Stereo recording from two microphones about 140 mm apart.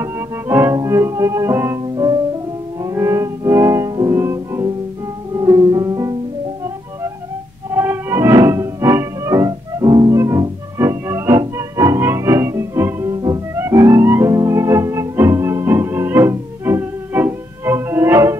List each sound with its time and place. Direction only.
0.0 s music: 20° right (ahead or behind)
7.7 s music: 15° right (ahead or behind)